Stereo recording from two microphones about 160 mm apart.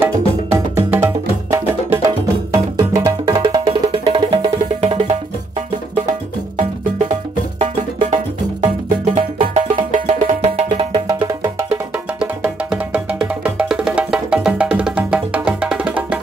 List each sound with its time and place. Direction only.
0.0 s music: 15° right (ahead or behind)
3.6 s music: 35° right (ahead or behind)
11.1 s music: 20° right (ahead or behind)
11.7 s music: 5° right (ahead or behind)